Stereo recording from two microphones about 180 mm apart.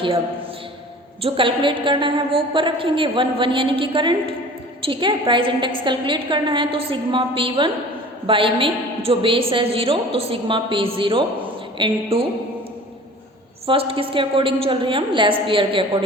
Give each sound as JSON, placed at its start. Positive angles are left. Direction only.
{"t": 1.2, "sound": "a woman's voice", "side_deg": -30}
{"t": 13.7, "sound": "a woman's voice", "side_deg": -30}